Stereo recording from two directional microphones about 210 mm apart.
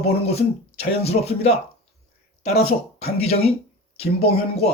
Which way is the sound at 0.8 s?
30° left (ahead or behind).